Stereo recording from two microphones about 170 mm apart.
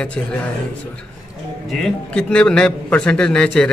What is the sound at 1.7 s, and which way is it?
A man's voice, 5° left (ahead or behind).